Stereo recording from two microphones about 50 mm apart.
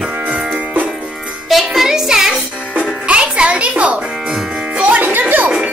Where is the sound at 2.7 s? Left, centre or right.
Right.